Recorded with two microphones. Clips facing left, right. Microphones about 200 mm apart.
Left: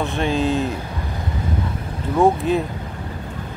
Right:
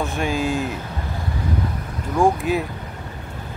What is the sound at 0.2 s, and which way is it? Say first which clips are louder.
Speech: left 3 dB; 15° right (ahead or behind).